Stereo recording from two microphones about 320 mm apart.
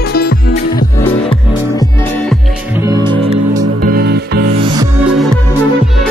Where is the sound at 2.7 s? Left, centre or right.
Centre.